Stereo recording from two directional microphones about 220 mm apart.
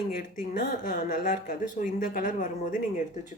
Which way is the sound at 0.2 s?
40° left (ahead or behind).